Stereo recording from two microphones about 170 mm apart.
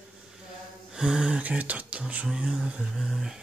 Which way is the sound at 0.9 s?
5° right (ahead or behind).